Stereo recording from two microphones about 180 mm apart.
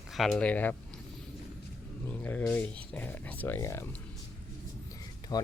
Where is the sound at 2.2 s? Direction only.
5° left (ahead or behind).